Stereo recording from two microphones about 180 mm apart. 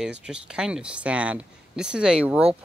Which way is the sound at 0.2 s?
5° right (ahead or behind).